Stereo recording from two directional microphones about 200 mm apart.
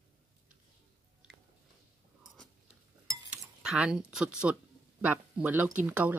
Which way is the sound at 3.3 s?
5° right (ahead or behind).